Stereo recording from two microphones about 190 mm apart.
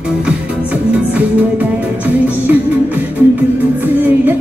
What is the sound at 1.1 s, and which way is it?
Music, 5° right (ahead or behind).